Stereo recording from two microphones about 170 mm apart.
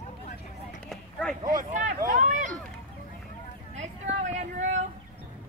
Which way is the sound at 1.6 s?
45° right (ahead or behind).